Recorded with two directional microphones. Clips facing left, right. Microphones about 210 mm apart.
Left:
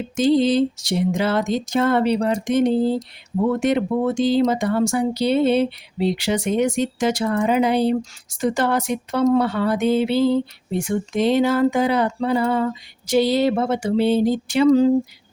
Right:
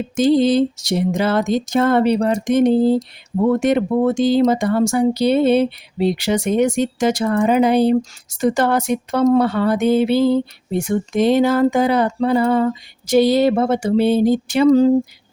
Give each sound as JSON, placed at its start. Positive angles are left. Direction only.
{"t": 0.2, "sound": "speech", "side_deg": -45}